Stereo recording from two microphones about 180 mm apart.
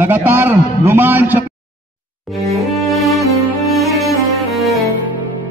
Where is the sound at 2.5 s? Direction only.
Centre (ahead or behind).